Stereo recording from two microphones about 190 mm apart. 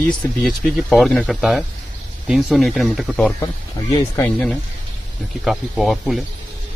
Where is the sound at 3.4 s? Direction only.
15° left (ahead or behind).